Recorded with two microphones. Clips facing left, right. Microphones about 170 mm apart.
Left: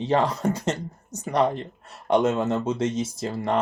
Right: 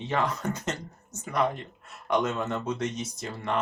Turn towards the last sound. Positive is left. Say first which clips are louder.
# left 6 dB
turn(degrees=35)  # may be behind; listen again after turning